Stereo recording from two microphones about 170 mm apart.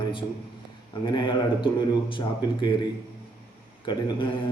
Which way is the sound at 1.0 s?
25° left (ahead or behind).